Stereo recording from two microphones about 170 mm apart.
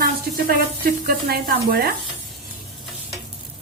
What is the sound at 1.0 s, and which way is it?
Sizzle, 65° right (ahead or behind).